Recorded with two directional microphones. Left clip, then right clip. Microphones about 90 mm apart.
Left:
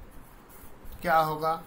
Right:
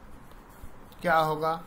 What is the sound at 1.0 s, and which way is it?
Speech, 35° right (ahead or behind).